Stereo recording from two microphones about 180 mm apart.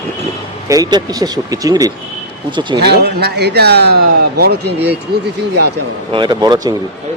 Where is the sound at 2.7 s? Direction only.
65° right (ahead or behind).